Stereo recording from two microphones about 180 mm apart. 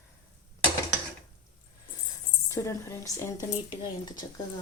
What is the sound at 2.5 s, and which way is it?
A woman's voice, 15° left (ahead or behind).